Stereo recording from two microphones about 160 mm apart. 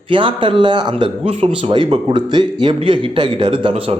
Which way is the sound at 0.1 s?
30° right (ahead or behind).